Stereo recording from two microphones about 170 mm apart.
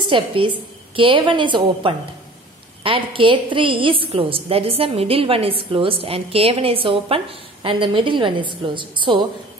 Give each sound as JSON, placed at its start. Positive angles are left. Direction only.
{"t": 0.0, "sound": "a woman's voice", "side_deg": -30}